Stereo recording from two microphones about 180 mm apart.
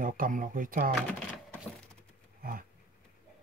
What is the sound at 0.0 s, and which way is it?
Speech, 50° right (ahead or behind).